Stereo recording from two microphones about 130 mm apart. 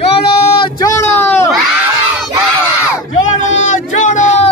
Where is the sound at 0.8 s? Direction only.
20° left (ahead or behind).